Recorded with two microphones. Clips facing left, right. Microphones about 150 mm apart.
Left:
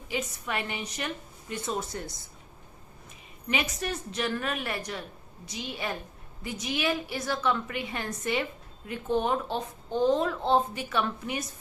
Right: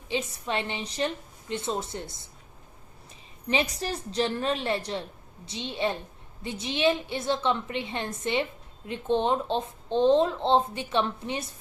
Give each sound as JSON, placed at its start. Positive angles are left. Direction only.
{"t": 0.1, "sound": "speech", "side_deg": -25}
{"t": 3.4, "sound": "speech", "side_deg": -30}